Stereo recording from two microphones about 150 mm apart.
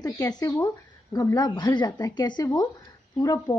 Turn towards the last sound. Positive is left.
turn(degrees=25)  # may be behind; listen again after turning